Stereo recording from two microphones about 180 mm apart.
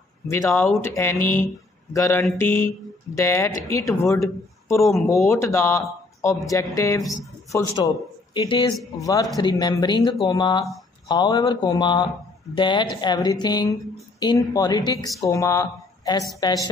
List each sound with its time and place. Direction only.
0.3 s speech: 15° left (ahead or behind)